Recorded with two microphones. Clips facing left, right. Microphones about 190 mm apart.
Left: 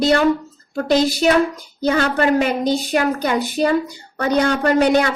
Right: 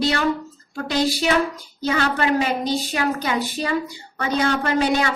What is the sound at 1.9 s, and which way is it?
A woman's voice, 40° left (ahead or behind).